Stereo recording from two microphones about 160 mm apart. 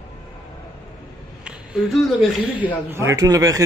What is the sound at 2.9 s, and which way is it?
Speech, 15° right (ahead or behind).